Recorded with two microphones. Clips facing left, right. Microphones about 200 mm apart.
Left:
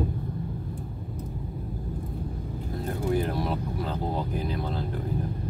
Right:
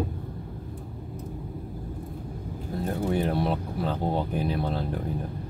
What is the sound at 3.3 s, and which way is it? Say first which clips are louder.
Speech: right 2 dB; 30° right (ahead or behind).